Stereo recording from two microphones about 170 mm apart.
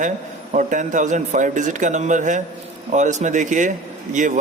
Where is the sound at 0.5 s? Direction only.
50° right (ahead or behind).